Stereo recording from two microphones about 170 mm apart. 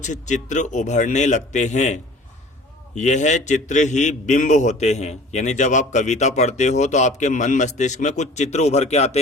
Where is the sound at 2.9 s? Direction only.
45° left (ahead or behind).